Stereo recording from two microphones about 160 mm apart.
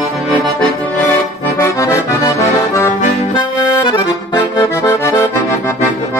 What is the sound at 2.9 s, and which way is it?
Accordion, 50° left (ahead or behind).